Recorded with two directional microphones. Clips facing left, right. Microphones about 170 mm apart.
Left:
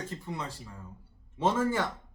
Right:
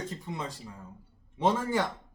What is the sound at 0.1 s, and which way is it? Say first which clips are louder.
Speech: even; 20° right (ahead or behind).